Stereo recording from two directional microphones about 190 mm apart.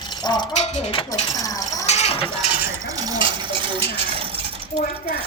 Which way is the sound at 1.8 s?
35° left (ahead or behind).